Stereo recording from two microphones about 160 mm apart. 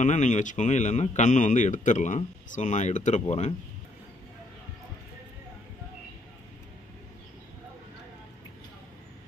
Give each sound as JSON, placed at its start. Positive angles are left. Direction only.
{"t": 0.0, "sound": "a man's voice", "side_deg": 50}